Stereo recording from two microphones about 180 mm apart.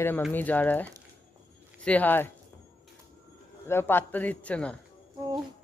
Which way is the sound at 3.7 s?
10° left (ahead or behind).